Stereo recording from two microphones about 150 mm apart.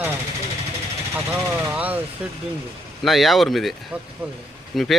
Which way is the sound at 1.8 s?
10° right (ahead or behind).